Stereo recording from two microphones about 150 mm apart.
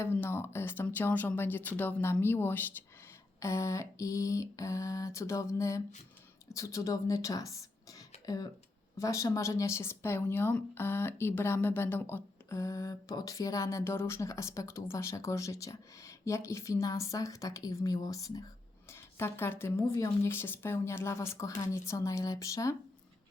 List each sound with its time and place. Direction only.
0.0 s speech: 15° left (ahead or behind)